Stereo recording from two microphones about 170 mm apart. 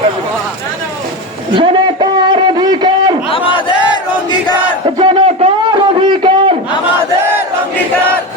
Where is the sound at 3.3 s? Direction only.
30° left (ahead or behind).